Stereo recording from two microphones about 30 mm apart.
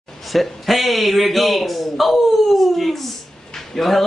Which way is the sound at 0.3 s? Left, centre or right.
Centre.